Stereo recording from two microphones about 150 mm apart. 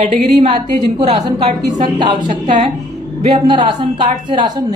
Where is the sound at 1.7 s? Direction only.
30° right (ahead or behind).